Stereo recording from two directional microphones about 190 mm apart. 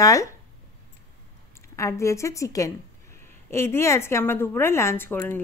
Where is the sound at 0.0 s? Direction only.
15° left (ahead or behind).